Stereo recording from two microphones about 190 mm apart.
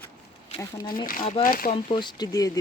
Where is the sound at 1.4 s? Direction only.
50° left (ahead or behind).